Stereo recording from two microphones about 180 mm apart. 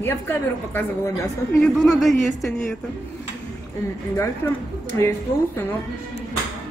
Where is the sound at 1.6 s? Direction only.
Centre (ahead or behind).